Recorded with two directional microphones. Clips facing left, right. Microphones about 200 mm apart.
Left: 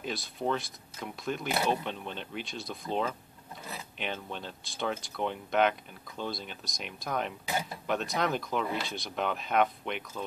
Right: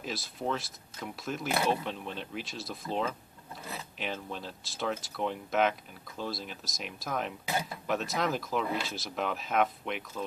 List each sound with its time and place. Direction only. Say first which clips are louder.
0.0 s speech: left 2 dB; centre (ahead or behind)